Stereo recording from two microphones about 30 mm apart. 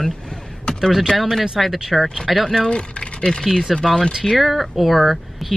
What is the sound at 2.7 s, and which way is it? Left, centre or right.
Speech, left.